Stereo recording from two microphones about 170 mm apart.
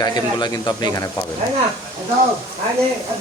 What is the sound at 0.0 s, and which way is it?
Speech, 25° left (ahead or behind).